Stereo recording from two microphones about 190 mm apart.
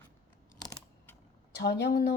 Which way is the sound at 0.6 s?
15° left (ahead or behind).